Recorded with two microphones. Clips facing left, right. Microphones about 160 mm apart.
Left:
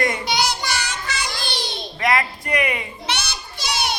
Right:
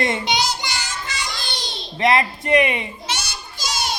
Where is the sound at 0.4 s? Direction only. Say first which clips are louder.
Left 2 dB; 70° left (ahead or behind).